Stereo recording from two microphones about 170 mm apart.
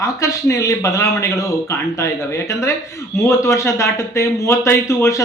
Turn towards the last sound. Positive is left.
turn(degrees=15)  # may be behind; listen again after turning